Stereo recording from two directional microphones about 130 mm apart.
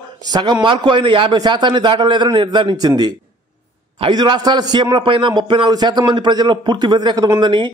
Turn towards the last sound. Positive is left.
turn(degrees=-35)  # may be behind; listen again after turning